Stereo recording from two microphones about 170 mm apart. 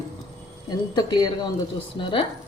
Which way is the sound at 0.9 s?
25° left (ahead or behind).